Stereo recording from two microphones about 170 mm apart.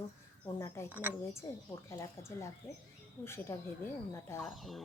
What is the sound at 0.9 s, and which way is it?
Speech, 10° right (ahead or behind).